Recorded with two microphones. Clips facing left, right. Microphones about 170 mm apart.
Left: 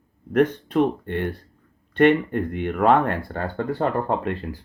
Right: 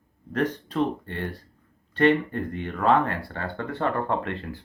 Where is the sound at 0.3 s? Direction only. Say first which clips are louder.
Left 6 dB; 55° left (ahead or behind).